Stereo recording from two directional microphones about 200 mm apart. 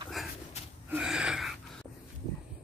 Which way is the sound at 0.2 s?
Centre (ahead or behind).